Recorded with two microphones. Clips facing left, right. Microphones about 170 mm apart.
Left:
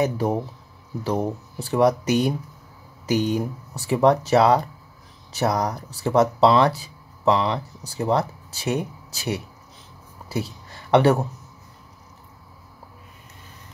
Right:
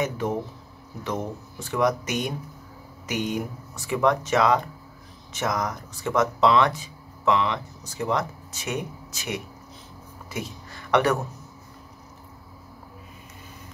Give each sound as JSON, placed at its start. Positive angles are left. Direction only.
{"t": 0.0, "sound": "speech", "side_deg": 35}